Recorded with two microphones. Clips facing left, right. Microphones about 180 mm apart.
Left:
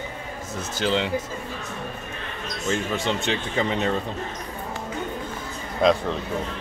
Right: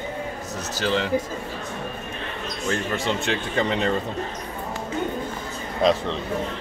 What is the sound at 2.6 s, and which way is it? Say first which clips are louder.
Speech: even; centre (ahead or behind).